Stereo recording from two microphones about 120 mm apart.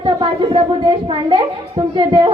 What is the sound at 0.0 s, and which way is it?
A woman's voice, 40° right (ahead or behind).